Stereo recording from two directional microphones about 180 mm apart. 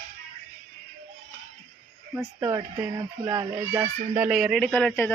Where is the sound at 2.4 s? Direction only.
20° right (ahead or behind).